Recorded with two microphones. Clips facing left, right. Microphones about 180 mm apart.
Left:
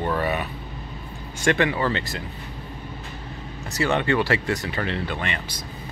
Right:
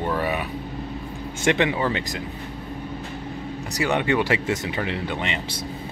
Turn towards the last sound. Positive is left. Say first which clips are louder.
# right 2 dB
turn(degrees=-20)  # may be behind; listen again after turning